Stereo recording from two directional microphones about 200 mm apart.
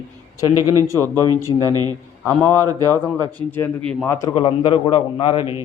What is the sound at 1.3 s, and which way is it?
Speech, 20° right (ahead or behind).